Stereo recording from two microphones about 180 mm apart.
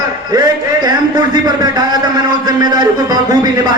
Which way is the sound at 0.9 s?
20° right (ahead or behind).